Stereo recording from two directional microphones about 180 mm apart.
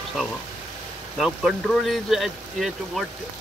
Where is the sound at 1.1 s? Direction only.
Centre (ahead or behind).